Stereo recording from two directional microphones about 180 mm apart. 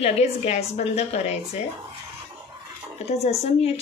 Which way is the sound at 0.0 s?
35° left (ahead or behind).